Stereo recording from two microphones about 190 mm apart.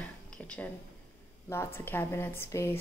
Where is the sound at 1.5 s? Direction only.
10° left (ahead or behind).